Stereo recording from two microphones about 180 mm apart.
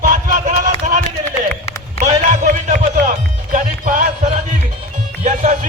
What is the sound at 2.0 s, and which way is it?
Music, 40° right (ahead or behind).